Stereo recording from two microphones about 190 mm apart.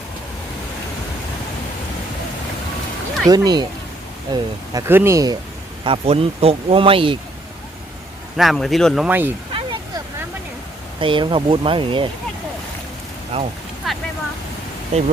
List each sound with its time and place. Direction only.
3.2 s speech: 20° right (ahead or behind)
5.8 s speech: 30° right (ahead or behind)
8.4 s speech: centre (ahead or behind)
9.0 s speech: 10° right (ahead or behind)
11.0 s speech: 25° right (ahead or behind)
13.3 s speech: 30° right (ahead or behind)
13.8 s vehicle: centre (ahead or behind)
14.9 s speech: 35° right (ahead or behind)